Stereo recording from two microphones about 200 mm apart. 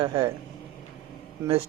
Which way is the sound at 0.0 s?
25° right (ahead or behind).